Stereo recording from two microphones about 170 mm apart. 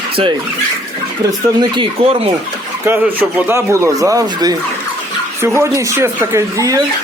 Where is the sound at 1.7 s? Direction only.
30° right (ahead or behind).